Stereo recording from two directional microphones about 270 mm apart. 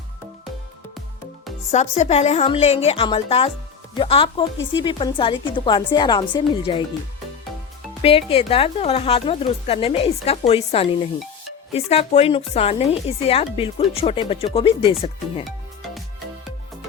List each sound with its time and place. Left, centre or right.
1.7 s speech: left
4.5 s speech: left
4.8 s a woman's voice: centre
8.0 s speech: left